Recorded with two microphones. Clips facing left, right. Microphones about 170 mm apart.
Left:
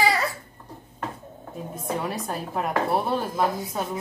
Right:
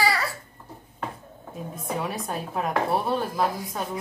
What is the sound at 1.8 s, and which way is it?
Speech, centre (ahead or behind).